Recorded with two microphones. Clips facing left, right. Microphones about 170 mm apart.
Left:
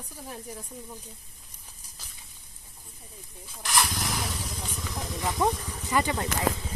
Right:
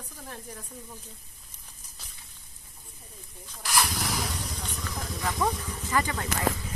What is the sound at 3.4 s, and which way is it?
Vehicle, 5° left (ahead or behind).